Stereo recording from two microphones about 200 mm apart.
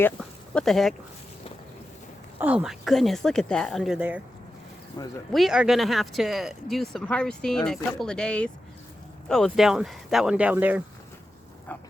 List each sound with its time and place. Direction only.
0.2 s a sound: centre (ahead or behind)
2.4 s speech: 5° right (ahead or behind)
5.0 s speech: 20° left (ahead or behind)
5.3 s speech: centre (ahead or behind)
11.7 s pig: 10° left (ahead or behind)